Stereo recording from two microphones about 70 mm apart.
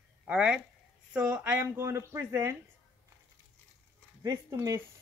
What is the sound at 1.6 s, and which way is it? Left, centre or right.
Speech, right.